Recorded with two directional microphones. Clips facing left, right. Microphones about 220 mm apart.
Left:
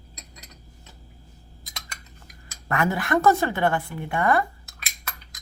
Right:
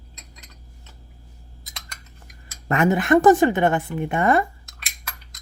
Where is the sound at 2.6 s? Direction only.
20° right (ahead or behind).